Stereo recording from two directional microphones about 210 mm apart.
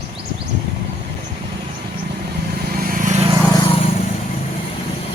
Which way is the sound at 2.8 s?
40° right (ahead or behind).